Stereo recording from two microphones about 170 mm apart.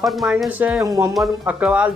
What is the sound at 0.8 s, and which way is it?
Speech, 20° right (ahead or behind).